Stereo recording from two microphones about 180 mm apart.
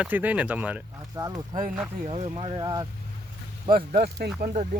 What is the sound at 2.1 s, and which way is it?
Speech, 30° right (ahead or behind).